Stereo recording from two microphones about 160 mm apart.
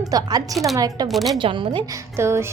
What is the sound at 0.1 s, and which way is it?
Speech, 25° right (ahead or behind).